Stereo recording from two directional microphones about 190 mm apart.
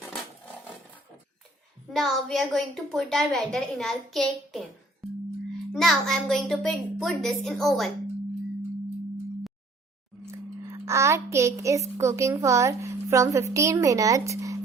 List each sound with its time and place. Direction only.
0.0 s roaring cats: centre (ahead or behind)
1.9 s a woman's voice: centre (ahead or behind)
5.0 s music: centre (ahead or behind)
5.7 s a woman's voice: centre (ahead or behind)
10.3 s speech: 15° right (ahead or behind)